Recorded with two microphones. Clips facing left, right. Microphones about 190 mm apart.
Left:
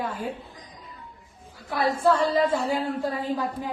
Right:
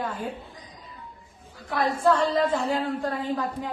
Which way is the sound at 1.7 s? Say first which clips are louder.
Even; 5° left (ahead or behind).